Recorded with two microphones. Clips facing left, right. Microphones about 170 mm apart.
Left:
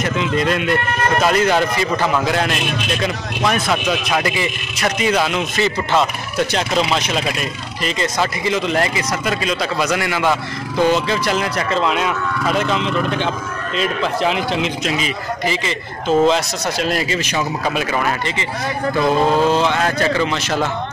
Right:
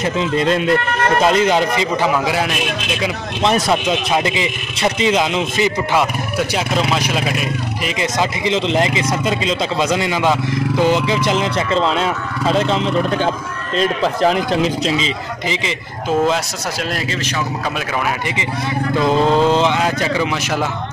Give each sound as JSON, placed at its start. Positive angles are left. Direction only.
{"t": 0.0, "sound": "speech", "side_deg": -30}
{"t": 2.1, "sound": "speech", "side_deg": -5}
{"t": 3.7, "sound": "speech", "side_deg": -25}
{"t": 6.3, "sound": "speech", "side_deg": -5}
{"t": 13.7, "sound": "a man's voice", "side_deg": -40}
{"t": 14.9, "sound": "speech", "side_deg": -20}
{"t": 19.3, "sound": "speech", "side_deg": -20}